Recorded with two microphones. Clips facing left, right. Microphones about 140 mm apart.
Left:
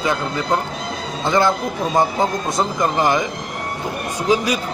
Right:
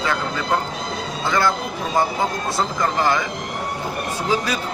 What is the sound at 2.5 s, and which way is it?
Speech, 20° left (ahead or behind).